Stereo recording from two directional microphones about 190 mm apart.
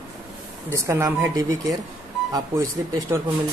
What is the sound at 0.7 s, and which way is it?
A man's voice, 15° right (ahead or behind).